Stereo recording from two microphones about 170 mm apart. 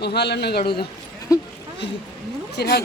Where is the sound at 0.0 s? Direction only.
75° left (ahead or behind).